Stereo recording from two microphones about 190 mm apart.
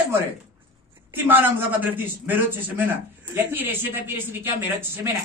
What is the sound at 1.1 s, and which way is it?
A man's voice, 10° right (ahead or behind).